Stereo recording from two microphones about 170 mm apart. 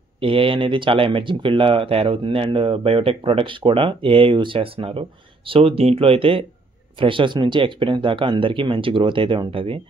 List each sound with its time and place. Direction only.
0.2 s speech: 30° right (ahead or behind)